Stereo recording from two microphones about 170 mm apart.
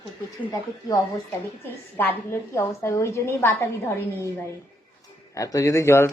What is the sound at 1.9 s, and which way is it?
A woman's voice, 15° left (ahead or behind).